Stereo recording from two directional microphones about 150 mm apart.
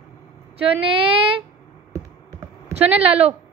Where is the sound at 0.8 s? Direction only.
35° right (ahead or behind).